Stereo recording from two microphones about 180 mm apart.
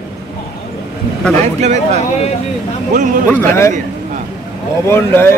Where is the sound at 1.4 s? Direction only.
40° right (ahead or behind).